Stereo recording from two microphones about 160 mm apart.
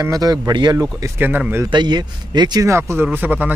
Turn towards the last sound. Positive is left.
turn(degrees=-10)  # may be behind; listen again after turning